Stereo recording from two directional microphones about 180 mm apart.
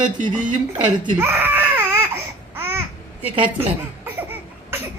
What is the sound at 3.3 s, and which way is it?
Speech, 30° right (ahead or behind).